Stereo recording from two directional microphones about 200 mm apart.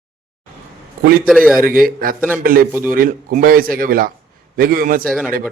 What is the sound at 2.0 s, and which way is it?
A man's voice, 45° right (ahead or behind).